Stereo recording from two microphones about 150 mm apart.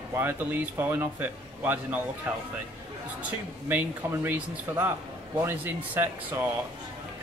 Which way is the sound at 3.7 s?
10° right (ahead or behind).